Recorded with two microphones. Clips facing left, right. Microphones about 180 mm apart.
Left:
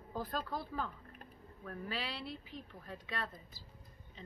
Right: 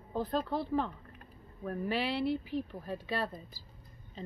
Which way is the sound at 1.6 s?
30° right (ahead or behind).